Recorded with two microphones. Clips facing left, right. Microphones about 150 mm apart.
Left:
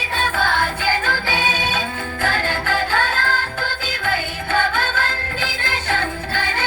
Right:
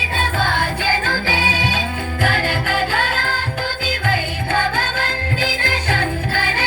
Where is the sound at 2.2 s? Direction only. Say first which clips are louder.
Right 1 dB; 15° right (ahead or behind).